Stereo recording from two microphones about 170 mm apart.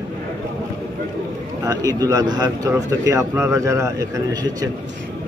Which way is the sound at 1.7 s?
20° right (ahead or behind).